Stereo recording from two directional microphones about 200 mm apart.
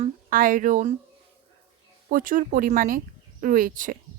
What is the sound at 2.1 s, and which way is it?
Speech, 45° right (ahead or behind).